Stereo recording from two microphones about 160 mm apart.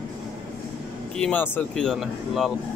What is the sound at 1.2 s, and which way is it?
Speech, 10° left (ahead or behind).